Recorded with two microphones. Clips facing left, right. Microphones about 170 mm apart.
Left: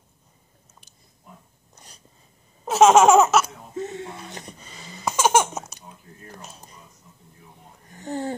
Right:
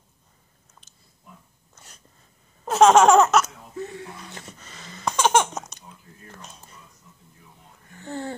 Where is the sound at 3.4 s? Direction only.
20° left (ahead or behind); by 5.8 s 5° left (ahead or behind).